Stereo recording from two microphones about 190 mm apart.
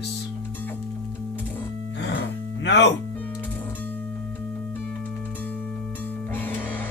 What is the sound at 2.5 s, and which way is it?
Music, 65° left (ahead or behind).